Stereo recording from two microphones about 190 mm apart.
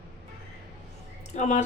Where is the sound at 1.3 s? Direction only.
40° left (ahead or behind).